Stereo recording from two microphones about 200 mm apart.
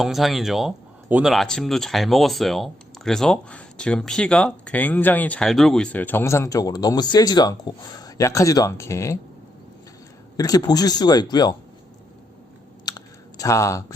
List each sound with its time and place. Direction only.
0.0 s speech: centre (ahead or behind); by 9.1 s 15° left (ahead or behind)
10.3 s speech: 20° left (ahead or behind)
13.4 s speech: 15° left (ahead or behind)